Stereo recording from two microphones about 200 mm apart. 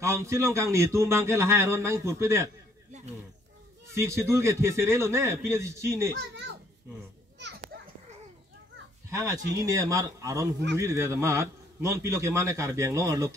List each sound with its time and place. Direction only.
0.0 s a man's voice: 15° right (ahead or behind)
3.9 s a man's voice: 15° right (ahead or behind)
6.1 s a child's voice: 60° right (ahead or behind)
7.3 s children playing: 60° right (ahead or behind)
9.1 s a man's voice: 15° right (ahead or behind)